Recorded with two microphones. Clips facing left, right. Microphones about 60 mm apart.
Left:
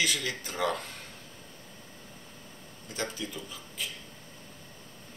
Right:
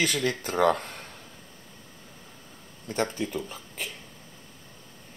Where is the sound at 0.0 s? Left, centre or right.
Right.